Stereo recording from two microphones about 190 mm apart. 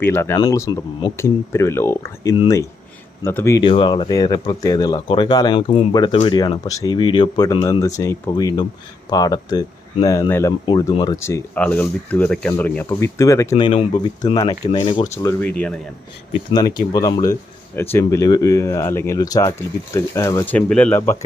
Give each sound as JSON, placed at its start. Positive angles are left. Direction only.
{"t": 0.0, "sound": "speech", "side_deg": 10}
{"t": 3.6, "sound": "speech", "side_deg": 25}
{"t": 16.5, "sound": "speech", "side_deg": 20}